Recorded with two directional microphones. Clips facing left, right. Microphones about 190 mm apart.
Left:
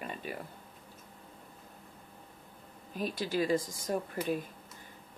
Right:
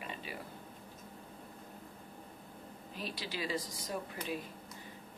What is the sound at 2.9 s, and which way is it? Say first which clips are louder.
Speech: left 9 dB; 50° left (ahead or behind).